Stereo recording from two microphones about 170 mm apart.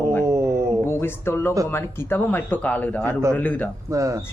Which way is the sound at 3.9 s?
20° right (ahead or behind).